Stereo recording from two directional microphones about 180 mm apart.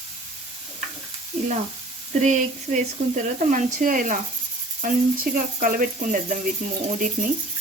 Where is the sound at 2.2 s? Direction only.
40° right (ahead or behind).